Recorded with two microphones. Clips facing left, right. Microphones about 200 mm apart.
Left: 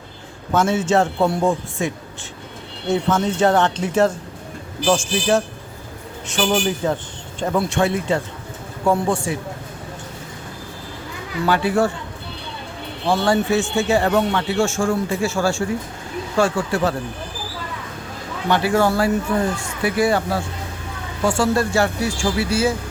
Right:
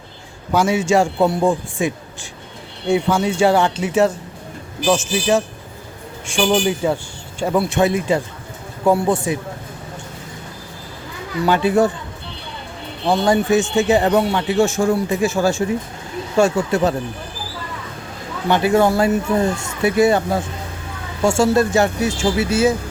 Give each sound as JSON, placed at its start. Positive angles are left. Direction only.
{"t": 0.5, "sound": "a man's voice", "side_deg": -10}
{"t": 2.9, "sound": "a man's voice", "side_deg": -10}
{"t": 5.1, "sound": "a man's voice", "side_deg": -5}
{"t": 6.5, "sound": "a man's voice", "side_deg": -10}
{"t": 11.4, "sound": "speech", "side_deg": -20}
{"t": 13.1, "sound": "a man's voice", "side_deg": -20}
{"t": 18.4, "sound": "speech", "side_deg": -20}